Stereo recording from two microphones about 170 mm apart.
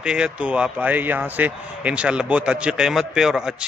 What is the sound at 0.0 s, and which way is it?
A man's voice, 5° right (ahead or behind).